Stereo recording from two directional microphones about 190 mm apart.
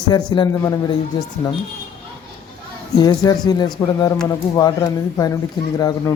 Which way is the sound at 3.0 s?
20° left (ahead or behind).